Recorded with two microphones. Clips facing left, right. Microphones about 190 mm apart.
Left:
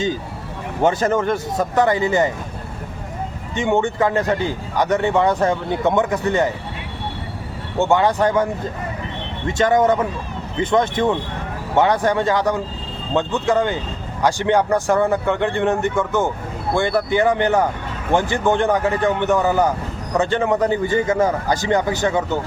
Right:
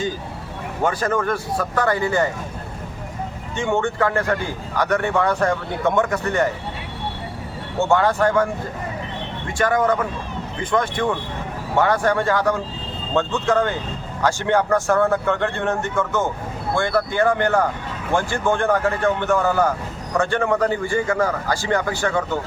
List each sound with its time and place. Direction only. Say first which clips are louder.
0.8 s a man's voice: left 4 dB; 25° left (ahead or behind)
3.5 s a man's voice: left 3 dB; 20° left (ahead or behind)
7.8 s a man's voice: left 1 dB; 15° left (ahead or behind)
9.6 s a man's voice: left 3 dB; 20° left (ahead or behind)